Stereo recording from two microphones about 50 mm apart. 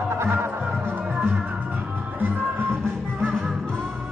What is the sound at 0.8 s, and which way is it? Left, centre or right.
Music, right.